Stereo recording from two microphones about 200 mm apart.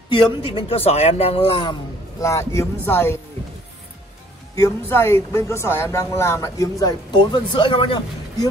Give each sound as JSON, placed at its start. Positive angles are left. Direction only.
{"t": 0.1, "sound": "speech", "side_deg": 25}
{"t": 4.6, "sound": "a woman's voice", "side_deg": 10}